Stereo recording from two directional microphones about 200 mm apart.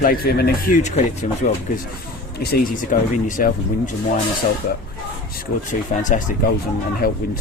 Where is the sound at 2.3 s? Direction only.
45° left (ahead or behind).